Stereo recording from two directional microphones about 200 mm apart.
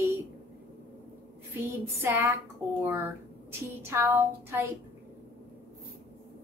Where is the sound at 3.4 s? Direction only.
10° right (ahead or behind).